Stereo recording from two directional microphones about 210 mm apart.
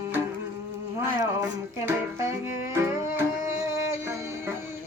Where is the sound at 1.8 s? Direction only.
10° right (ahead or behind).